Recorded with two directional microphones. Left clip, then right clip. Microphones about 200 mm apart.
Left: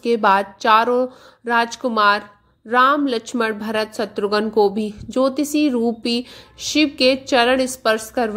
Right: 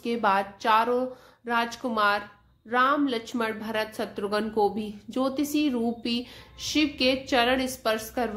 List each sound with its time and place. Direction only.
0.0 s a woman's voice: 35° left (ahead or behind)